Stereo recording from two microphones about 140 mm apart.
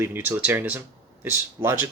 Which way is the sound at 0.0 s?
15° right (ahead or behind).